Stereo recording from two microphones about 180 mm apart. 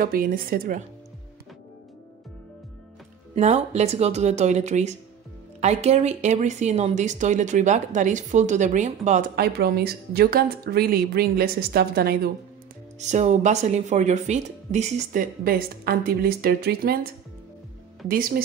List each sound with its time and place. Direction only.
0.0 s a woman's voice: 50° right (ahead or behind)
3.3 s speech: 40° right (ahead or behind)
9.3 s a woman's voice: 60° right (ahead or behind)
13.0 s speech: 40° right (ahead or behind)
15.4 s a woman's voice: 55° right (ahead or behind)
18.0 s a woman's voice: 50° right (ahead or behind)